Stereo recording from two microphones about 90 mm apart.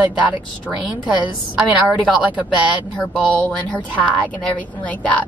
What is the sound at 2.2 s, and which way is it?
Speech, 15° right (ahead or behind).